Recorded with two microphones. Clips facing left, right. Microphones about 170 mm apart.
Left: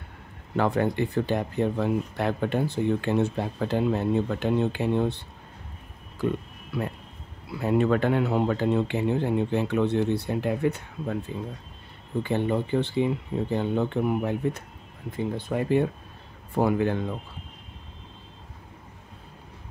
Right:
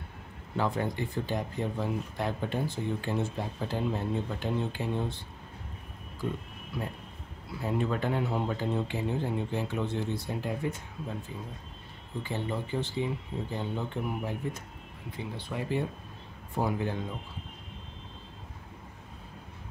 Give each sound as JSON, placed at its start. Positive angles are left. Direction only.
{"t": 0.6, "sound": "speech", "side_deg": 65}
{"t": 12.2, "sound": "speech", "side_deg": 60}
{"t": 15.0, "sound": "speech", "side_deg": 50}